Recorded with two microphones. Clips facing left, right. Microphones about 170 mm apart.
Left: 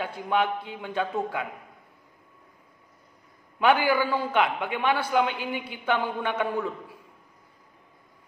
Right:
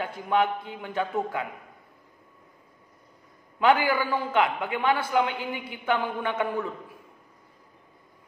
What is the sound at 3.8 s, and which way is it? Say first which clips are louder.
A man's voice: left 2 dB; 20° right (ahead or behind).